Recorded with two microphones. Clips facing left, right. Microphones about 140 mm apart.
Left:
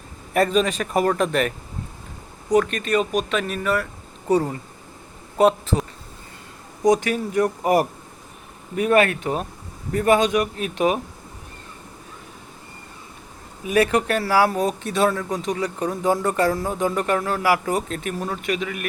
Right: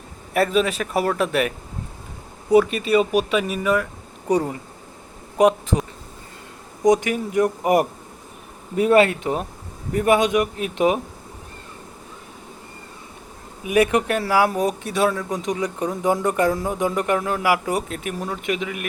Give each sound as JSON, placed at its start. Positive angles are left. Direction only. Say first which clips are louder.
{"t": 0.3, "sound": "speech", "louder": "even", "side_deg": -5}
{"t": 6.8, "sound": "speech", "louder": "right 1 dB", "side_deg": -15}
{"t": 13.7, "sound": "speech", "louder": "right 1 dB", "side_deg": -15}